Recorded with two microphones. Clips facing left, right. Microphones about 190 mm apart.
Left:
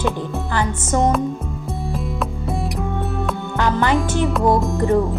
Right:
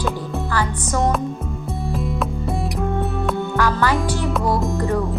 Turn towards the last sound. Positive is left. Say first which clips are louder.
# left 2 dB
turn(degrees=0)  # may be behind; listen again after turning